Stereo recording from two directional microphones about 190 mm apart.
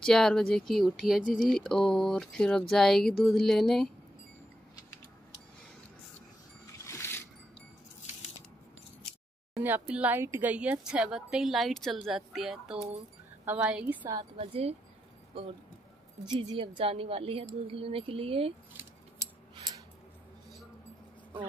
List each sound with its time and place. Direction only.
0.0 s speech: centre (ahead or behind)
6.9 s a sound: 15° left (ahead or behind)
9.6 s a woman's voice: 10° right (ahead or behind)
14.0 s a woman's voice: 25° right (ahead or behind)
16.3 s a woman's voice: 25° right (ahead or behind)